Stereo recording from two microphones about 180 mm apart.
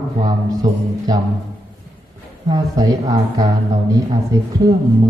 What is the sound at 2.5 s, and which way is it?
Speech, 20° right (ahead or behind).